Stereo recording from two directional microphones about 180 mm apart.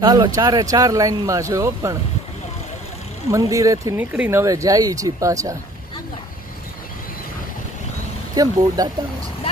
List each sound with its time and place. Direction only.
0.0 s speech: 25° right (ahead or behind)
3.3 s speech: 20° right (ahead or behind)
8.4 s speech: 20° right (ahead or behind)